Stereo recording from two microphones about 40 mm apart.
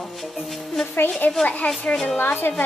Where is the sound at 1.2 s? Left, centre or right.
Left.